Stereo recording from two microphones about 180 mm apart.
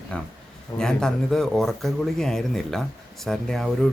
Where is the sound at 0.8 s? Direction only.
5° left (ahead or behind).